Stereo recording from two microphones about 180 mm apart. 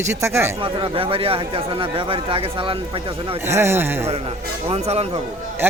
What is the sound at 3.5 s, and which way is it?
Speech, 15° right (ahead or behind).